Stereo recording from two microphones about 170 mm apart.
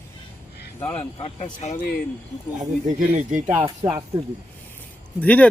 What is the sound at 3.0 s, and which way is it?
Speech, 45° right (ahead or behind).